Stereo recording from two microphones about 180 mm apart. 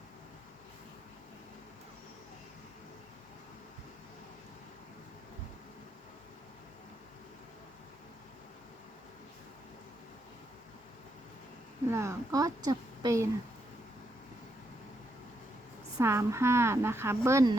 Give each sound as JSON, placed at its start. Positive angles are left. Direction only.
{"t": 11.9, "sound": "a woman's voice", "side_deg": -15}
{"t": 16.0, "sound": "a woman's voice", "side_deg": -15}